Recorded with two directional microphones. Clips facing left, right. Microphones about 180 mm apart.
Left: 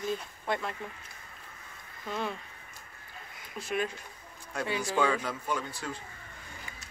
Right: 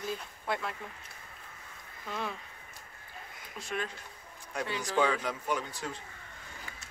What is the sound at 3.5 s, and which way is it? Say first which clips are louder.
Speech: left 5 dB; 10° left (ahead or behind).